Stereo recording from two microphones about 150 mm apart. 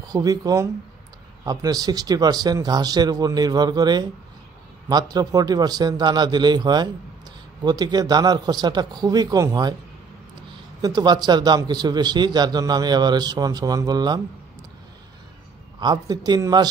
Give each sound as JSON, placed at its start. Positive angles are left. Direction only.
{"t": 0.0, "sound": "a man's voice", "side_deg": -25}
{"t": 11.0, "sound": "a man's voice", "side_deg": -30}
{"t": 15.8, "sound": "a man's voice", "side_deg": -25}